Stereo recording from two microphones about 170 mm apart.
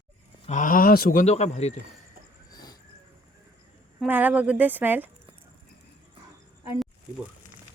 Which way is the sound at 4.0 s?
10° right (ahead or behind).